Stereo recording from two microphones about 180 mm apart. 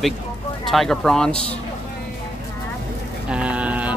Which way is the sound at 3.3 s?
5° right (ahead or behind).